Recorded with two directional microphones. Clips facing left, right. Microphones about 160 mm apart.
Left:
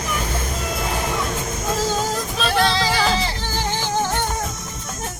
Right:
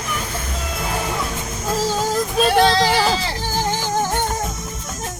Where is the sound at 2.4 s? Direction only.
45° right (ahead or behind).